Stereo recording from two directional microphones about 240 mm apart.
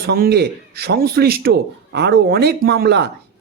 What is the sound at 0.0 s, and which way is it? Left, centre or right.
Speech, right.